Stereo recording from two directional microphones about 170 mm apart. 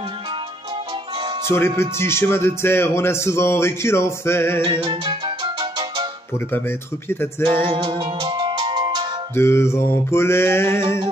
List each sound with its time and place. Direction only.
1.5 s speech: 15° left (ahead or behind)
4.6 s music: 25° right (ahead or behind)
7.1 s speech: 15° left (ahead or behind)
7.4 s music: 30° right (ahead or behind)
9.3 s speech: 15° left (ahead or behind)